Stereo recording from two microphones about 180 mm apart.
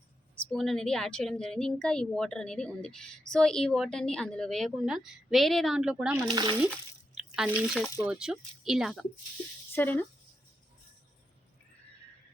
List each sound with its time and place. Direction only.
0.4 s a woman's voice: centre (ahead or behind)
6.2 s speech: 25° right (ahead or behind)
7.2 s a woman's voice: 5° right (ahead or behind)
9.7 s speech: 10° left (ahead or behind)